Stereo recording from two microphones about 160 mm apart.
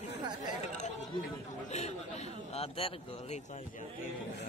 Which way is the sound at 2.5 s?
40° left (ahead or behind).